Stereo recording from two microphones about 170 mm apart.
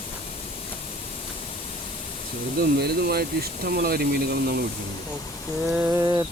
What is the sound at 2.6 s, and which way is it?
Speech, 65° right (ahead or behind).